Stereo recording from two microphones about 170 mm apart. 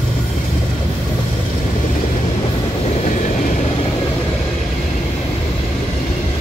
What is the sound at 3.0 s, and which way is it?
Vehicle, 45° left (ahead or behind).